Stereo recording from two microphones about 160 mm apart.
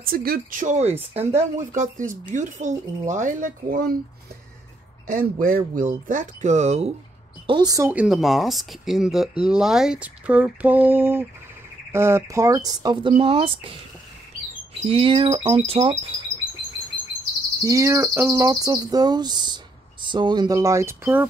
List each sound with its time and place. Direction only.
0.0 s speech: 65° right (ahead or behind)
5.0 s speech: 60° right (ahead or behind); by 6.9 s 45° right (ahead or behind)
7.4 s cricket: 25° right (ahead or behind)
7.9 s speech: 5° right (ahead or behind)
9.4 s a sound: 5° right (ahead or behind)
11.9 s cricket: 15° right (ahead or behind); by 13.7 s 35° right (ahead or behind)
14.7 s speech: 35° right (ahead or behind)
17.6 s cricket: 20° right (ahead or behind)